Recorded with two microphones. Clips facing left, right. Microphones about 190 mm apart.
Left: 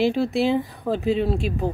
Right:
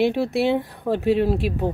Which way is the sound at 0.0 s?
Centre (ahead or behind).